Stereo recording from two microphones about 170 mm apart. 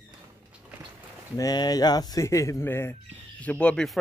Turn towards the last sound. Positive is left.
turn(degrees=5)  # may be behind; listen again after turning